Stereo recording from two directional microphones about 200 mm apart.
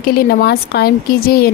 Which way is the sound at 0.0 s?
50° left (ahead or behind).